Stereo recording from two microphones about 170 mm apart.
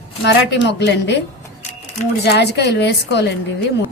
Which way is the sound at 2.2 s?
75° left (ahead or behind).